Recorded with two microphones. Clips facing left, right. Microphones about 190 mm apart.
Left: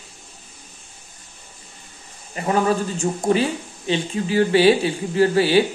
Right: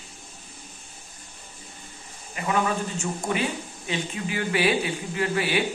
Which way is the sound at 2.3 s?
40° left (ahead or behind).